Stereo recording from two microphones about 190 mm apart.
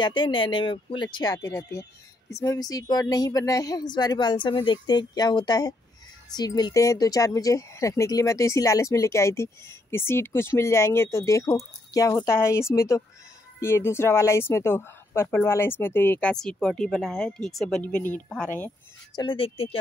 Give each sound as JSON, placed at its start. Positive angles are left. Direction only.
{"t": 0.0, "sound": "speech", "side_deg": 25}
{"t": 19.1, "sound": "speech", "side_deg": 25}